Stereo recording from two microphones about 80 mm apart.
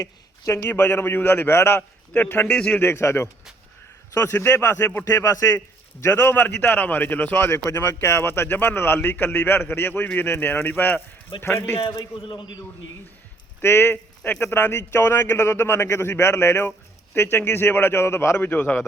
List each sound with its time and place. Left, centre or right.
0.0 s a man's voice: left
2.5 s speech: centre
2.8 s speech: left
6.0 s a man's voice: left
12.1 s a man's voice: left
13.6 s a man's voice: left
18.3 s a man's voice: left